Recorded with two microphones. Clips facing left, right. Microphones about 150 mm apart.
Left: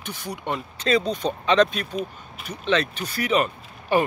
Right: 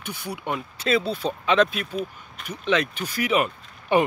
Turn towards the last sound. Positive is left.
turn(degrees=-10)  # may be behind; listen again after turning